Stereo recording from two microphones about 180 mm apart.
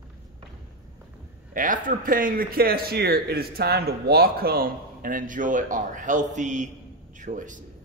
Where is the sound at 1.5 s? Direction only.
45° right (ahead or behind).